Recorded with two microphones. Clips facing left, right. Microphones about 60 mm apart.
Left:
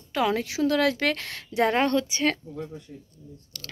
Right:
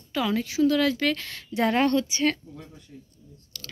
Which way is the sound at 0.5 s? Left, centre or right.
Left.